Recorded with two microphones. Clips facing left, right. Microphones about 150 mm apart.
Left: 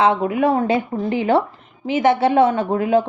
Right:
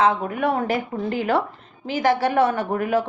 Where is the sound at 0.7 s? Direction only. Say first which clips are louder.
Left 4 dB; 20° left (ahead or behind).